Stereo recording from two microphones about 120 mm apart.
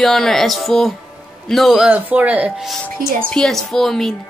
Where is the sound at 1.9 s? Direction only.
15° right (ahead or behind).